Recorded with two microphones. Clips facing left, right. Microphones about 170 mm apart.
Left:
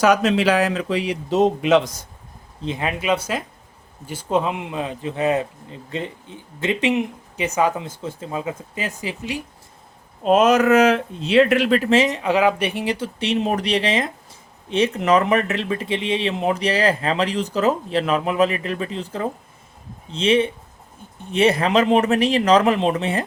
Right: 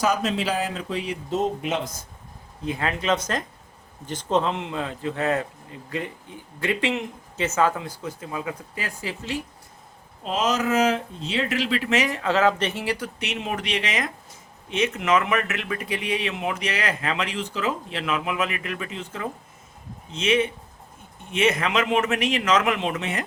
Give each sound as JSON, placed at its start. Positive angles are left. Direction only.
{"t": 0.0, "sound": "speech", "side_deg": 75}
{"t": 2.6, "sound": "speech", "side_deg": 20}
{"t": 10.2, "sound": "speech", "side_deg": 55}
{"t": 11.9, "sound": "speech", "side_deg": 25}